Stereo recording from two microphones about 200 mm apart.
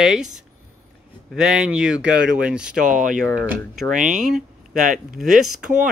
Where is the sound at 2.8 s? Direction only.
40° right (ahead or behind).